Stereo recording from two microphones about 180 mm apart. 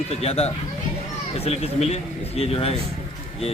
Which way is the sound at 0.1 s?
35° left (ahead or behind).